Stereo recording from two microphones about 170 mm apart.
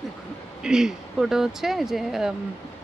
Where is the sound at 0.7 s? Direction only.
5° right (ahead or behind).